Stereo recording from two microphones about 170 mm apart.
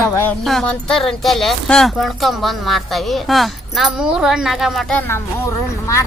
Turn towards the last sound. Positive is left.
turn(degrees=15)  # may be behind; listen again after turning